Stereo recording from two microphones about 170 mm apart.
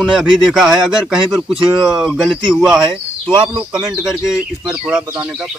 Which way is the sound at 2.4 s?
25° right (ahead or behind).